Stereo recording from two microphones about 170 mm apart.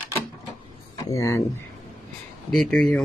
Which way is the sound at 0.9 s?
20° left (ahead or behind).